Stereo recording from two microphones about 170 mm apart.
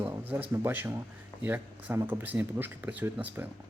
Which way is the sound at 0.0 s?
10° right (ahead or behind).